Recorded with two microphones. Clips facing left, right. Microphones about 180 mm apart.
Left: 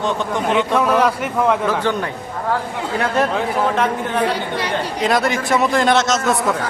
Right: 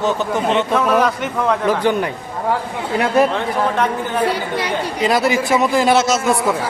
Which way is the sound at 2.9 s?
10° right (ahead or behind).